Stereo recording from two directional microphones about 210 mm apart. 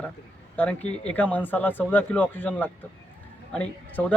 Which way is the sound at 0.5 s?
5° left (ahead or behind).